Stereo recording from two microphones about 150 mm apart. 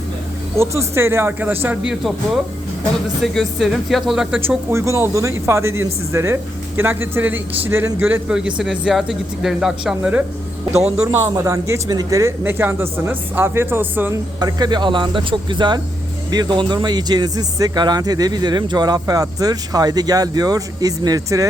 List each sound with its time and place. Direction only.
0.5 s speech: 20° right (ahead or behind); by 4.4 s 5° right (ahead or behind)
4.4 s speech: 15° right (ahead or behind)
14.3 s speech: 25° right (ahead or behind)